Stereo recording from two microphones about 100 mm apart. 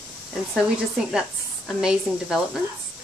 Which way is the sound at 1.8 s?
5° right (ahead or behind).